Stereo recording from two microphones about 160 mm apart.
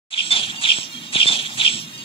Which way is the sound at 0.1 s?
35° left (ahead or behind).